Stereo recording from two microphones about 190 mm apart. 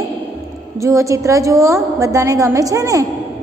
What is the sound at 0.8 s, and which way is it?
Music, 15° right (ahead or behind).